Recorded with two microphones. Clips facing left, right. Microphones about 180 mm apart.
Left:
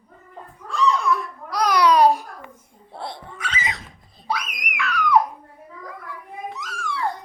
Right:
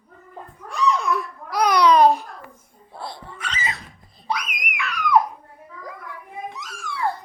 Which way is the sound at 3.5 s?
15° left (ahead or behind).